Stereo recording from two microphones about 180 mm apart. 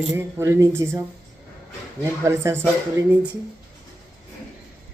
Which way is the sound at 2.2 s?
15° right (ahead or behind).